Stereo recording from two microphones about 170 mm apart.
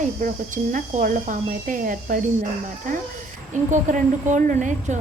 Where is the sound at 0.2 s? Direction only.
50° right (ahead or behind).